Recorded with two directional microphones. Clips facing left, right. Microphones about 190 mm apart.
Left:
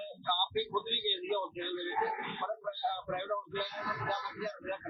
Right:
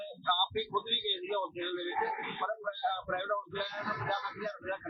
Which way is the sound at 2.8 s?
5° left (ahead or behind).